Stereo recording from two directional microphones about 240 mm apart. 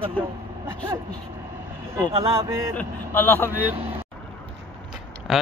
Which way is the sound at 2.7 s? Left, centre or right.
Centre.